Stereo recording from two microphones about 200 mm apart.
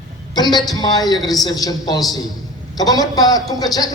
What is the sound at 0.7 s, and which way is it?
A man's voice, 20° left (ahead or behind).